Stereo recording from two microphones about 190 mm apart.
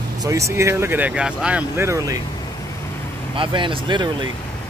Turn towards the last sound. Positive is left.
turn(degrees=-25)  # may be behind; listen again after turning